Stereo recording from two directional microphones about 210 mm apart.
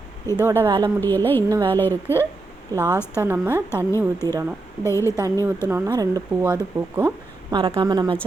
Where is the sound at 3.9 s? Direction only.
10° left (ahead or behind).